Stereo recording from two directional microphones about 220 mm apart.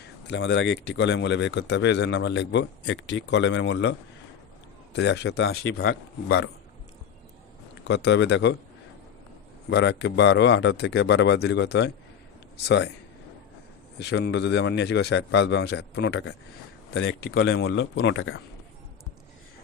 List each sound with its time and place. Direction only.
0.3 s speech: 55° left (ahead or behind)
4.9 s speech: 50° left (ahead or behind)
7.9 s speech: 50° left (ahead or behind)
9.6 s speech: 50° left (ahead or behind)
14.0 s speech: 50° left (ahead or behind)